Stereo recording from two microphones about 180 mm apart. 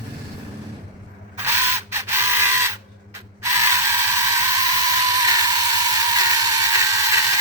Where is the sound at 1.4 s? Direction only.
15° right (ahead or behind).